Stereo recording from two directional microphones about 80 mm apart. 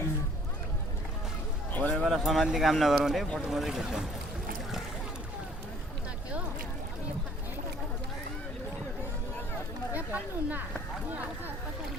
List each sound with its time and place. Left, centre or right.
1.7 s a sound: centre
2.0 s speech: centre
9.9 s speech: right